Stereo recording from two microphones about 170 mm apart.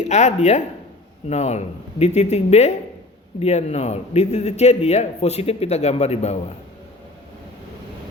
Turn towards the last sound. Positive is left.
turn(degrees=40)  # may be behind; listen again after turning